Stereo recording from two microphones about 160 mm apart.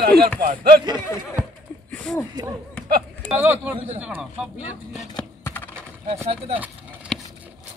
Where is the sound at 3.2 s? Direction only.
10° right (ahead or behind).